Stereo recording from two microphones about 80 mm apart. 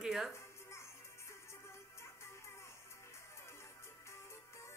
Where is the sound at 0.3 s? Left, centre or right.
Left.